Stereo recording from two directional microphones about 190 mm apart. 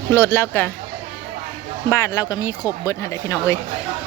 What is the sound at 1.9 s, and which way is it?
Speech, 15° left (ahead or behind).